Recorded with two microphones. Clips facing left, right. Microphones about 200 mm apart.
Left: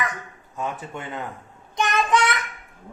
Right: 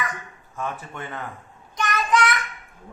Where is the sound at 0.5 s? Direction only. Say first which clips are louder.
Left 1 dB; 20° left (ahead or behind).